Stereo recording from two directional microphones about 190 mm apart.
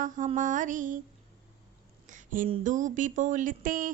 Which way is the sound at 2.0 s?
45° right (ahead or behind).